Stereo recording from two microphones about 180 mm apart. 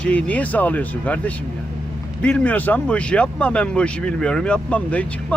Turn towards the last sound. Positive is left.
turn(degrees=10)  # may be behind; listen again after turning